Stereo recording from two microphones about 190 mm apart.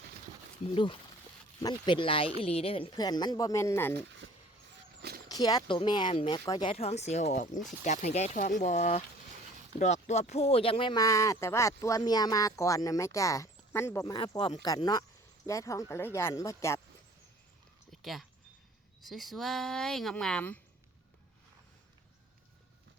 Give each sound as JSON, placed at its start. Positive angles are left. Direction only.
{"t": 0.6, "sound": "speech", "side_deg": 30}
{"t": 3.9, "sound": "speech", "side_deg": -70}
{"t": 5.3, "sound": "speech", "side_deg": 20}
{"t": 18.0, "sound": "speech", "side_deg": 0}